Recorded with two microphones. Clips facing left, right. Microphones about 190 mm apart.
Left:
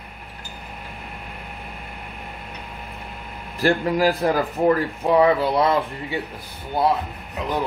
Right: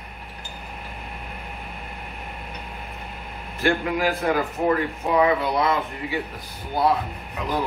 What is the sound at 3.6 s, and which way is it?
Speech, 35° left (ahead or behind).